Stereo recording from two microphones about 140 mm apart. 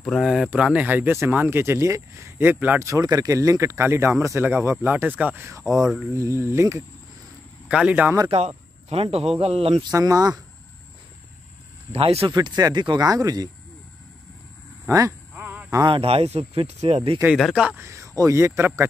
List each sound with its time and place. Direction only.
0.0 s speech: centre (ahead or behind); by 6.8 s 20° right (ahead or behind)
7.6 s speech: 10° right (ahead or behind)
8.3 s speech: 50° right (ahead or behind)
9.9 s speech: 25° right (ahead or behind)
11.9 s speech: 45° right (ahead or behind)
12.3 s speech: 30° right (ahead or behind)
14.9 s speech: 20° right (ahead or behind)
15.3 s a sound: 10° right (ahead or behind)
15.9 s speech: 45° right (ahead or behind)
17.4 s speech: centre (ahead or behind)
17.6 s speech: 20° right (ahead or behind)